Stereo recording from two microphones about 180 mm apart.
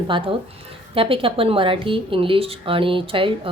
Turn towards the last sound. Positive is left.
turn(degrees=-30)  # may be behind; listen again after turning